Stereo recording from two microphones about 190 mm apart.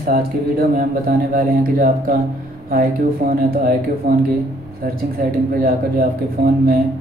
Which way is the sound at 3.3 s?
50° right (ahead or behind).